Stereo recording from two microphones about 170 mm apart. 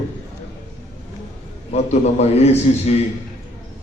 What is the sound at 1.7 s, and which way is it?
A man's voice, 40° left (ahead or behind).